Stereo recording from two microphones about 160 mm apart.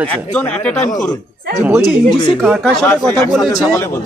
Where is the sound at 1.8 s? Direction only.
30° left (ahead or behind).